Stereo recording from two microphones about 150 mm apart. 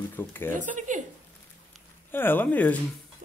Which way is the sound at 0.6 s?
55° right (ahead or behind).